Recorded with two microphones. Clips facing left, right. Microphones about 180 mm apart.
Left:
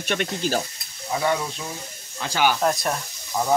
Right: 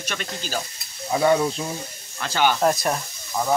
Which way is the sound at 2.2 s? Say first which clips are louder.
Even; 10° left (ahead or behind).